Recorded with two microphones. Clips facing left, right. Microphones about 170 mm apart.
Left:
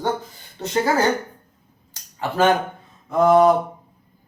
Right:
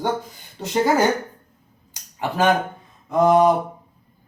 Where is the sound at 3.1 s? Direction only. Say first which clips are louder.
Left 1 dB; 15° right (ahead or behind).